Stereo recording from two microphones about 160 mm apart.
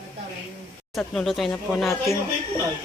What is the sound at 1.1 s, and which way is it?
Speech, centre (ahead or behind).